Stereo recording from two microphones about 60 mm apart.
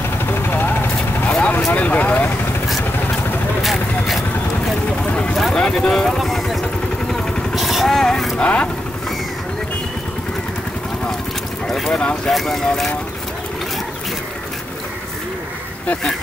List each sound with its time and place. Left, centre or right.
0.3 s vehicle: left
1.7 s vehicle: left
5.1 s a sound: centre
5.5 s vehicle: centre
8.4 s vehicle: centre
11.6 s boat: centre
11.9 s boat: centre
12.3 s speech: centre